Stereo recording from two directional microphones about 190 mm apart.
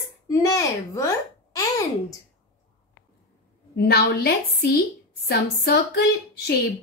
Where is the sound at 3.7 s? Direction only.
55° left (ahead or behind).